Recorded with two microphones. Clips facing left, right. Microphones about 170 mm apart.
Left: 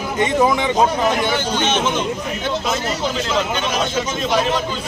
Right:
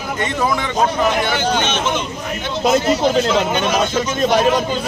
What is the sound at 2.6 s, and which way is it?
Speech, 45° right (ahead or behind).